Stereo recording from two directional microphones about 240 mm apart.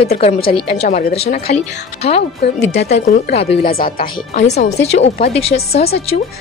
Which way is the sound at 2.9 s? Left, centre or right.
Left.